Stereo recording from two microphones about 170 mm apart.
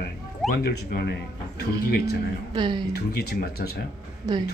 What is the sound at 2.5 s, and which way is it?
Speech, 25° right (ahead or behind).